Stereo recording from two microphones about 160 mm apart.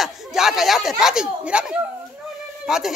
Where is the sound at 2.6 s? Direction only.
5° right (ahead or behind).